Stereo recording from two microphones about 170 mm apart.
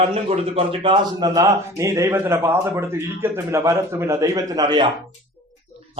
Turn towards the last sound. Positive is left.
turn(degrees=-25)  # may be behind; listen again after turning